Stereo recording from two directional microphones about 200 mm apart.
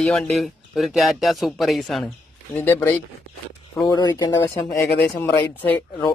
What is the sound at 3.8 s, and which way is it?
Speech, 20° left (ahead or behind).